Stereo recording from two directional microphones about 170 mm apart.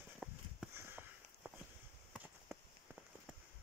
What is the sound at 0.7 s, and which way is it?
Sniff, 15° right (ahead or behind).